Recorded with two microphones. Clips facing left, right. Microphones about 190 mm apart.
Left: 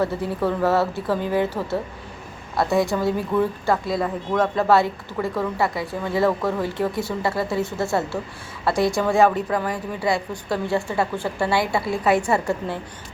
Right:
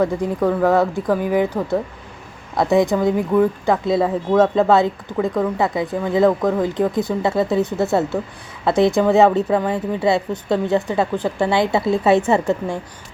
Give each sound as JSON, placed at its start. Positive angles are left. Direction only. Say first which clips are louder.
{"t": 0.0, "sound": "speech", "louder": "right 4 dB", "side_deg": -15}
{"t": 2.6, "sound": "speech", "louder": "right 5 dB", "side_deg": -20}